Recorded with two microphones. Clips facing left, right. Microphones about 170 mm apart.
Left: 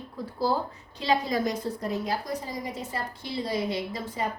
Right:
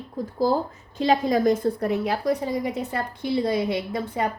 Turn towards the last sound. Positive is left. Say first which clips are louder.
# right 5 dB
turn(degrees=-60)  # may be behind; listen again after turning